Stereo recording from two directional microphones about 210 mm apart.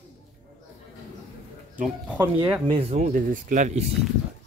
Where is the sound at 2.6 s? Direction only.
30° right (ahead or behind).